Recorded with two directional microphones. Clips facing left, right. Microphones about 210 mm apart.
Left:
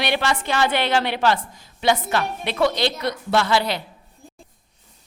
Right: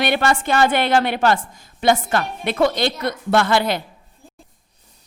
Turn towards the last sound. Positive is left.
turn(degrees=-50)  # may be behind; listen again after turning